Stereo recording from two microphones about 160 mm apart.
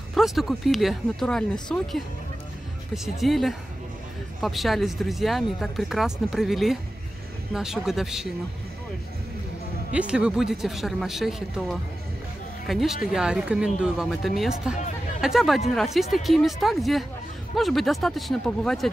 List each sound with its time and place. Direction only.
0.1 s speech: centre (ahead or behind)
9.9 s speech: 5° right (ahead or behind)